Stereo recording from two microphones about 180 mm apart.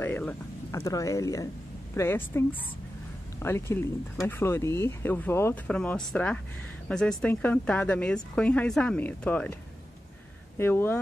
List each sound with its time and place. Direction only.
0.0 s speech: 10° left (ahead or behind)
10.6 s speech: 10° left (ahead or behind)